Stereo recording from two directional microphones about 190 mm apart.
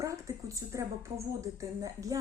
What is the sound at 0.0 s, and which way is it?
Speech, 15° right (ahead or behind).